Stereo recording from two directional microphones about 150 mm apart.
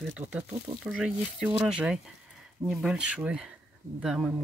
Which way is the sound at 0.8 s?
Centre (ahead or behind).